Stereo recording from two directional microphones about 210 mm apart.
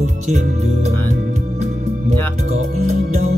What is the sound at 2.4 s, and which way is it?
Music, 35° right (ahead or behind).